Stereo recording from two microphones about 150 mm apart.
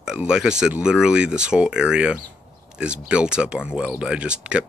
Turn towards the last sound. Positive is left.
turn(degrees=-5)  # may be behind; listen again after turning